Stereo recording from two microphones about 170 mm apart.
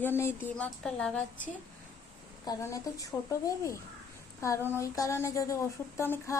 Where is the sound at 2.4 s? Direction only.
20° left (ahead or behind).